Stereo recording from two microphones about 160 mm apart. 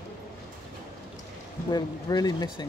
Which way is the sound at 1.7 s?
25° left (ahead or behind).